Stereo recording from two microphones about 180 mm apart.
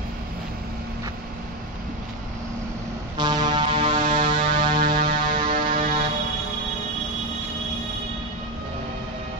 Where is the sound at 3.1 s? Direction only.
25° right (ahead or behind).